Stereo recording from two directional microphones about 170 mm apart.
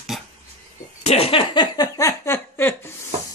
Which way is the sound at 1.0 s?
35° left (ahead or behind).